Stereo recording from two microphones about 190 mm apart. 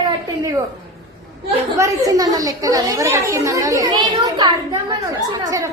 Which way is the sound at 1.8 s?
20° right (ahead or behind).